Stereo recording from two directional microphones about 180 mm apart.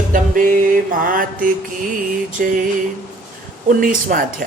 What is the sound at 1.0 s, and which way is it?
A woman's voice, 50° right (ahead or behind).